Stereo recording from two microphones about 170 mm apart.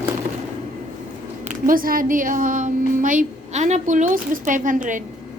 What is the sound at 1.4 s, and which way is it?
A woman's voice, 55° right (ahead or behind).